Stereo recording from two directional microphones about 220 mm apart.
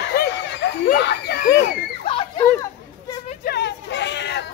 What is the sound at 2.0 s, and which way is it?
Children playing, 25° left (ahead or behind).